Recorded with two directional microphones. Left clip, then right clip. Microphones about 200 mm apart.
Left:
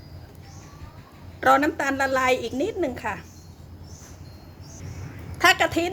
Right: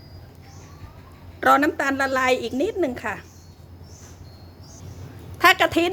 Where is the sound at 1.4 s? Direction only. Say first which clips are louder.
Right 1 dB; 25° right (ahead or behind).